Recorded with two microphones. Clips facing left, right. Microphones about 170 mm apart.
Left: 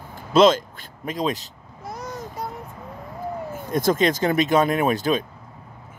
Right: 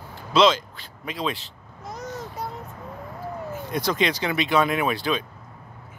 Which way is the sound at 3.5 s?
45° left (ahead or behind).